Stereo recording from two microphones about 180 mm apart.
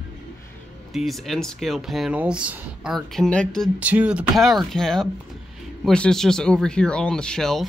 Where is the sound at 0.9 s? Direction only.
Centre (ahead or behind).